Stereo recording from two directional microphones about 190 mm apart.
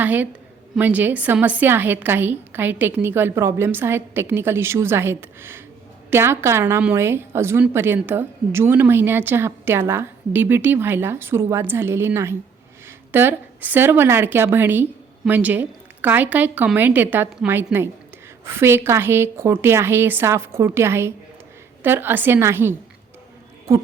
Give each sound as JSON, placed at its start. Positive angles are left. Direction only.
{"t": 0.0, "sound": "a woman's voice", "side_deg": -10}